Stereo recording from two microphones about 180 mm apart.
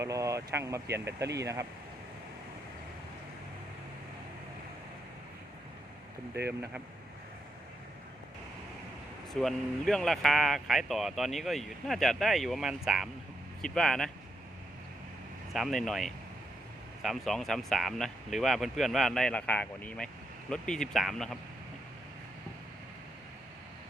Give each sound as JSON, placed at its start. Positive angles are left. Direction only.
{"t": 0.0, "sound": "speech", "side_deg": -15}
{"t": 9.3, "sound": "speech", "side_deg": 0}
{"t": 15.5, "sound": "speech", "side_deg": 0}